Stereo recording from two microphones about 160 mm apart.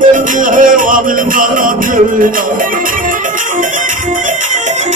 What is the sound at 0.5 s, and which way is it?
Music, 55° right (ahead or behind).